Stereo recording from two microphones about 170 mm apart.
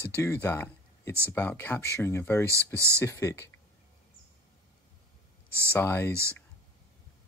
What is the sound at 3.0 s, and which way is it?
Speech, 15° left (ahead or behind).